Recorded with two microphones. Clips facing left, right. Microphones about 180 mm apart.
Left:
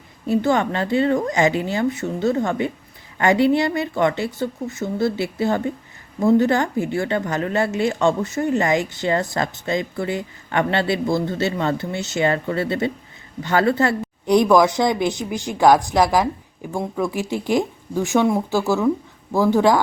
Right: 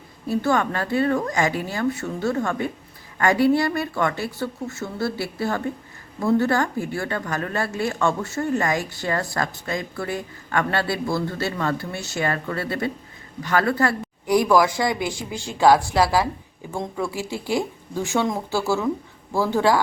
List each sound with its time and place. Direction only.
0.3 s speech: 20° left (ahead or behind)